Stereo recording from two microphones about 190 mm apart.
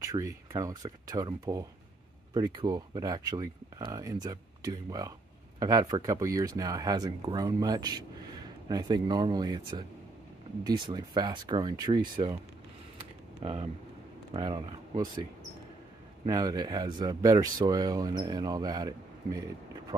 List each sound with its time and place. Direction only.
0.0 s speech: 20° right (ahead or behind)
12.9 s a sound: 30° right (ahead or behind)
14.3 s speech: 20° right (ahead or behind)
16.3 s speech: 20° right (ahead or behind)